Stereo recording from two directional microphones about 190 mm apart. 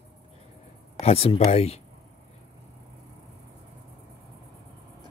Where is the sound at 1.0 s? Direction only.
35° left (ahead or behind).